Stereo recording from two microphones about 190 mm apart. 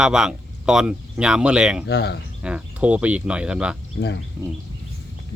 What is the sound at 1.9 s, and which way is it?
Speech, 60° left (ahead or behind).